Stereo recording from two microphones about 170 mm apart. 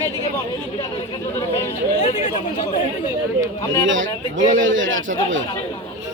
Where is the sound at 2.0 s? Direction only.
45° left (ahead or behind).